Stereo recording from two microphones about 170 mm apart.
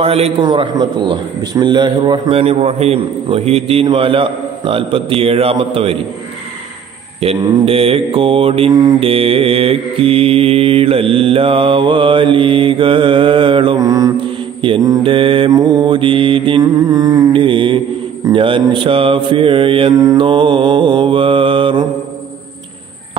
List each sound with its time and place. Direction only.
0.0 s a man's voice: 35° right (ahead or behind)
0.4 s a man's voice: 25° right (ahead or behind)
7.2 s a man's voice: 35° right (ahead or behind); by 14.1 s 20° right (ahead or behind)
14.6 s mantra: 25° right (ahead or behind)
18.2 s a man's voice: 30° right (ahead or behind)